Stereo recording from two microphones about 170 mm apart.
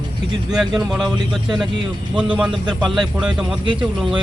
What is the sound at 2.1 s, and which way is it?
A man's voice, 5° right (ahead or behind).